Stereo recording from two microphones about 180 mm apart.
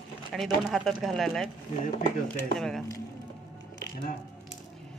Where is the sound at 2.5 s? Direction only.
Centre (ahead or behind).